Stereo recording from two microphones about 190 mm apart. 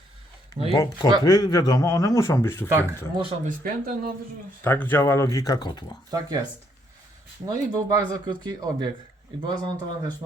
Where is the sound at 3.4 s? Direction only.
45° right (ahead or behind).